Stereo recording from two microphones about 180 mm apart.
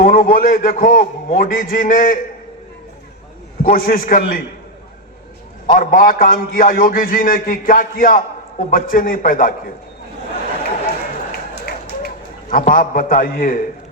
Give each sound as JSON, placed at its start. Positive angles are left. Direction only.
{"t": 0.0, "sound": "a man's voice", "side_deg": 50}
{"t": 3.6, "sound": "a man's voice", "side_deg": 50}
{"t": 5.6, "sound": "a man's voice", "side_deg": 50}
{"t": 11.6, "sound": "a sound", "side_deg": 55}
{"t": 12.7, "sound": "a man's voice", "side_deg": 50}